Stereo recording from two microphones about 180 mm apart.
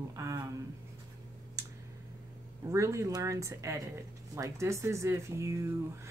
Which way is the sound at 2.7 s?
15° right (ahead or behind).